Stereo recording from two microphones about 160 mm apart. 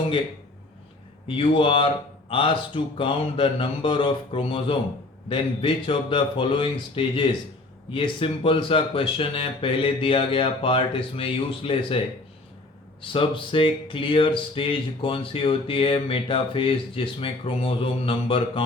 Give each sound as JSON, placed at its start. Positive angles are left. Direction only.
{"t": 1.4, "sound": "speech", "side_deg": 35}
{"t": 13.0, "sound": "speech", "side_deg": 30}